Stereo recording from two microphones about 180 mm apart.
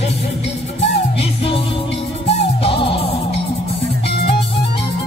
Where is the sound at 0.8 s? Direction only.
35° left (ahead or behind).